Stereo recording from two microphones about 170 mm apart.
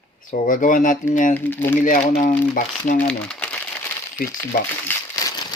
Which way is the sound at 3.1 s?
5° left (ahead or behind).